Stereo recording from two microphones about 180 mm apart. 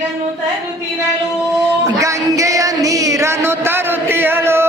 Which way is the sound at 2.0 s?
15° right (ahead or behind).